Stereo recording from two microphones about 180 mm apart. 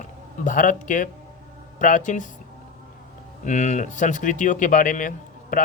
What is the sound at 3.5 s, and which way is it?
Speech, 40° left (ahead or behind).